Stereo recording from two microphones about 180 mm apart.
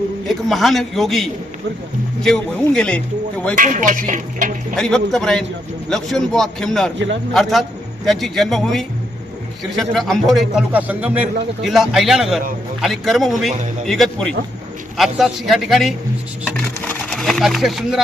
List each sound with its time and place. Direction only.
0.3 s a man's voice: centre (ahead or behind)
3.6 s speech: 45° right (ahead or behind)
4.8 s a man's voice: 5° left (ahead or behind)
16.6 s sewing machine: 10° left (ahead or behind)